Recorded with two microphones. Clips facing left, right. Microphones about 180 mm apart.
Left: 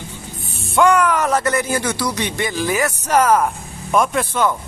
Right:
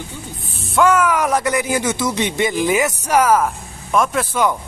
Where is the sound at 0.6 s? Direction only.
Centre (ahead or behind).